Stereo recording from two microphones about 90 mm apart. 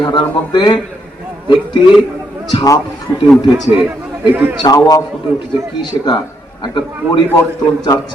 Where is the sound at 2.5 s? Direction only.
40° left (ahead or behind).